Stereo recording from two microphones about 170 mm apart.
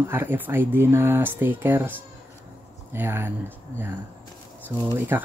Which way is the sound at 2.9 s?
15° right (ahead or behind).